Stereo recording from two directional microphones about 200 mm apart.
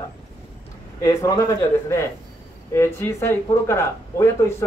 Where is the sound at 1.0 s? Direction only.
20° left (ahead or behind).